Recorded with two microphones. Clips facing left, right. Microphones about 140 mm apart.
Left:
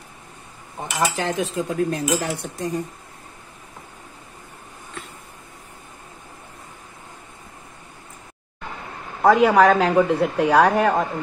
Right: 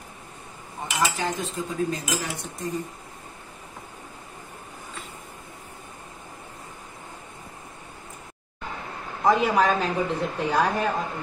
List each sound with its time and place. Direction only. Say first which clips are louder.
1.1 s speech: left 5 dB; 80° left; by 2.7 s 60° left (ahead or behind)
9.2 s speech: left 6 dB; 65° left (ahead or behind)